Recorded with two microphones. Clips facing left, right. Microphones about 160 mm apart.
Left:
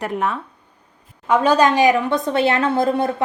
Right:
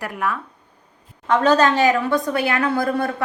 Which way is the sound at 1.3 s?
10° left (ahead or behind).